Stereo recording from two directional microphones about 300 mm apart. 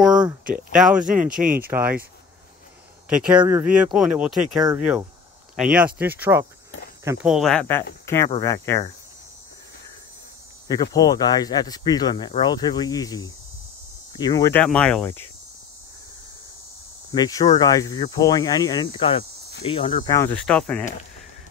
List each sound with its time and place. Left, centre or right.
0.7 s speech: centre
1.3 s speech: right
1.7 s speech: centre
3.1 s speech: centre
10.7 s speech: centre
17.1 s speech: centre